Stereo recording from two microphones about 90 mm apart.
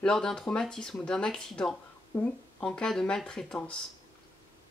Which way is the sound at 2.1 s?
25° left (ahead or behind).